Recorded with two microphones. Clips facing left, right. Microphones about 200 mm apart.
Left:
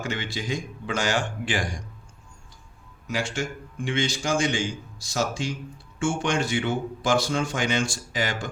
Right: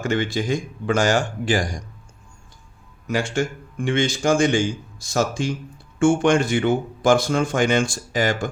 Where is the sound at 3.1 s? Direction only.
50° right (ahead or behind).